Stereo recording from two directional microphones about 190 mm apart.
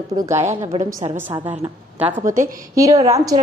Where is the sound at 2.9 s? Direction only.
35° right (ahead or behind).